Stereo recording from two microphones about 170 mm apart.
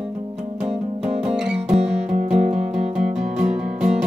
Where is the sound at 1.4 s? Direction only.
5° right (ahead or behind).